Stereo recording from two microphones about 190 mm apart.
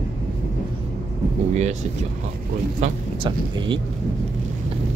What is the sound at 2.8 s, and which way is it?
Speech, 25° right (ahead or behind).